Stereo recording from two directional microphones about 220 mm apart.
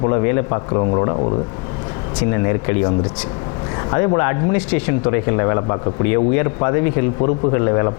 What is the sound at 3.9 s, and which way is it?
A man's voice, 25° left (ahead or behind).